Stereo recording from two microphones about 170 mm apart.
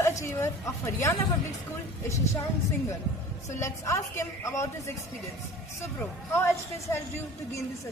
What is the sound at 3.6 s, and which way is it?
A woman's voice, 15° left (ahead or behind).